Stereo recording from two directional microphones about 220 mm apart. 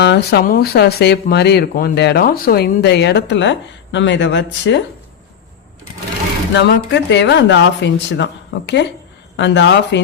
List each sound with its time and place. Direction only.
0.0 s speech: 50° left (ahead or behind)
6.5 s speech: 50° left (ahead or behind)